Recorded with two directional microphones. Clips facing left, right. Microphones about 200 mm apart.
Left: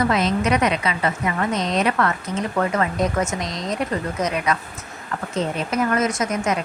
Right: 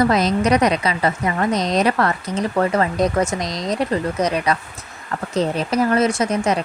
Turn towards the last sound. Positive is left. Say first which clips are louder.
# right 3 dB
turn(degrees=-30)  # may be behind; listen again after turning